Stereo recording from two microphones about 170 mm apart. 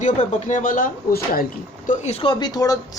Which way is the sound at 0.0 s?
45° left (ahead or behind).